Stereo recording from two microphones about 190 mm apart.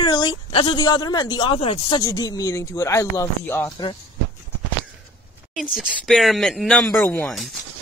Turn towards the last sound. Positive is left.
turn(degrees=0)  # may be behind; listen again after turning